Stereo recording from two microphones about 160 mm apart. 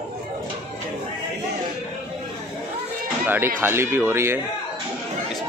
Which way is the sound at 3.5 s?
15° right (ahead or behind).